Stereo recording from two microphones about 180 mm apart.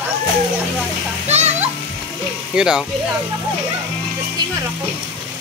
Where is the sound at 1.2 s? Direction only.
35° right (ahead or behind).